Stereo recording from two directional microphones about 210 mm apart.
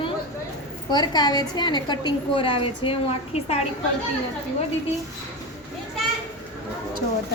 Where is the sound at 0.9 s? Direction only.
20° left (ahead or behind).